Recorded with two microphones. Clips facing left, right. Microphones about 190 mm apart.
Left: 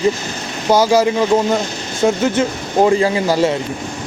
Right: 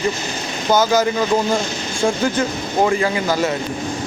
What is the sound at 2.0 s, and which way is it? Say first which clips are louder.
Speech: left 4 dB; 10° left (ahead or behind).